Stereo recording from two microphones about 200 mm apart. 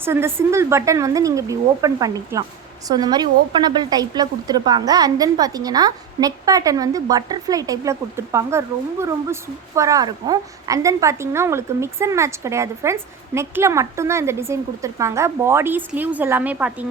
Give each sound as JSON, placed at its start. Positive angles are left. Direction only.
{"t": 0.0, "sound": "a woman's voice", "side_deg": -10}